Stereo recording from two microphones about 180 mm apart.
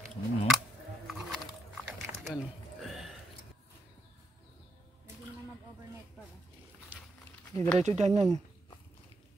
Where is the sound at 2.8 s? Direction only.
5° right (ahead or behind).